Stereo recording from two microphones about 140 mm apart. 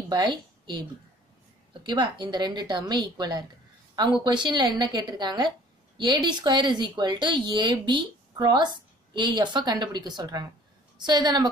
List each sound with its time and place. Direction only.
0.1 s a woman's voice: 30° right (ahead or behind)